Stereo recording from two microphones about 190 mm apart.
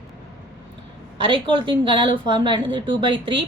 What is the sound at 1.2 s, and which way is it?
Speech, 25° right (ahead or behind).